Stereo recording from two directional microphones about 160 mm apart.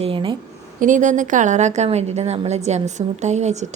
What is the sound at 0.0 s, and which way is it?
Speech, 30° right (ahead or behind).